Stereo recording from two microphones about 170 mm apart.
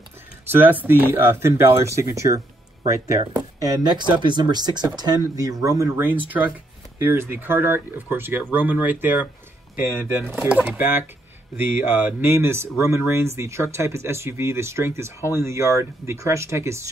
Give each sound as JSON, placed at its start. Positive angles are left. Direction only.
{"t": 0.5, "sound": "speech", "side_deg": -10}